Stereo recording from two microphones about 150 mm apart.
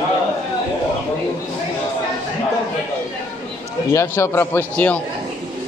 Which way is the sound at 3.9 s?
20° left (ahead or behind).